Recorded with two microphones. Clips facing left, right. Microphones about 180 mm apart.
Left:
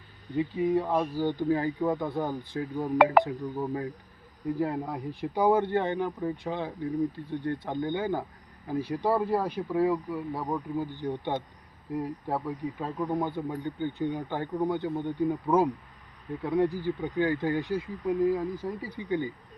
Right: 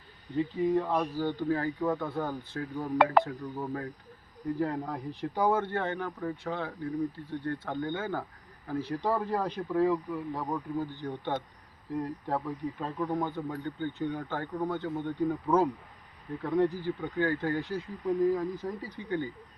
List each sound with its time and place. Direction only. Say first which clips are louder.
0.3 s speech: left 1 dB; 10° left (ahead or behind)